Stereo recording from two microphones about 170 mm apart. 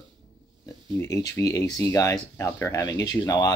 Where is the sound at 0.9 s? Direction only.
20° left (ahead or behind).